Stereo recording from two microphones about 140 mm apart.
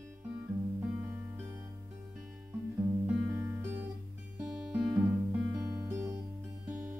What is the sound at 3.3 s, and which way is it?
Music, 20° right (ahead or behind).